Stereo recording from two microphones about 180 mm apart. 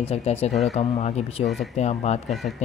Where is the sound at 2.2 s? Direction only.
Centre (ahead or behind).